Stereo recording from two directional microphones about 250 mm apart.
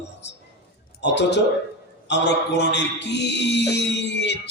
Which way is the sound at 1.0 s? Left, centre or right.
Left.